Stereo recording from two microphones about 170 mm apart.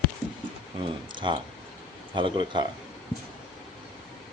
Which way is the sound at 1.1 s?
30° right (ahead or behind).